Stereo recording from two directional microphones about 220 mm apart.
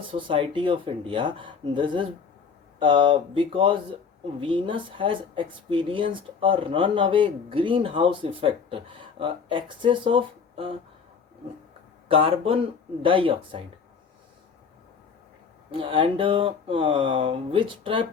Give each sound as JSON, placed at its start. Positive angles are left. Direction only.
{"t": 0.1, "sound": "speech", "side_deg": -25}
{"t": 12.0, "sound": "speech", "side_deg": -25}
{"t": 15.7, "sound": "speech", "side_deg": -25}